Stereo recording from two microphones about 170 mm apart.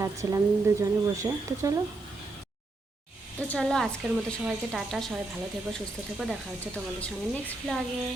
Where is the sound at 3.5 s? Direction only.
5° left (ahead or behind).